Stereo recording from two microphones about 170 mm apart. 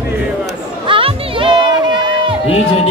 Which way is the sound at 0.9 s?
30° right (ahead or behind).